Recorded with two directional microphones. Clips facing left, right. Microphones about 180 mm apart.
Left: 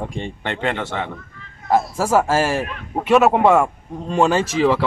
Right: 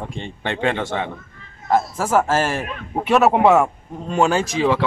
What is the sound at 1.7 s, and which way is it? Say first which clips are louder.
A man's voice: left 1 dB; 10° left (ahead or behind).